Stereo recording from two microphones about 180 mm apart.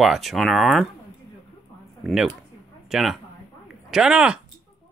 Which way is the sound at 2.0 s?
Centre (ahead or behind).